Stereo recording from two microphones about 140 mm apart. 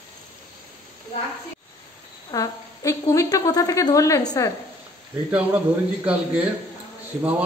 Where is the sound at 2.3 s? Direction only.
25° left (ahead or behind).